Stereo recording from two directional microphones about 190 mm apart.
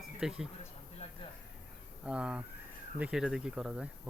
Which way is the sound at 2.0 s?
5° right (ahead or behind).